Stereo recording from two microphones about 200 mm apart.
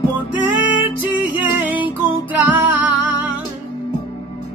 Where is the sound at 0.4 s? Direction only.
10° right (ahead or behind).